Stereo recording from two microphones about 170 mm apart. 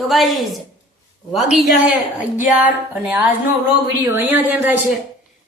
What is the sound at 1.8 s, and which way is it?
Speech, 10° right (ahead or behind).